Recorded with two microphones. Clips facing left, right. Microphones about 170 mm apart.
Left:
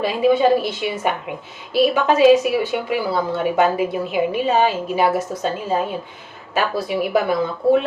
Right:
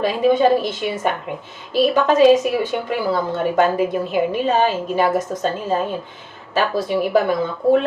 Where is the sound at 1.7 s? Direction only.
10° left (ahead or behind).